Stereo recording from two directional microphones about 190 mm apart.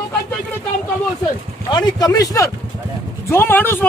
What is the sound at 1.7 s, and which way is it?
Speech, 20° left (ahead or behind).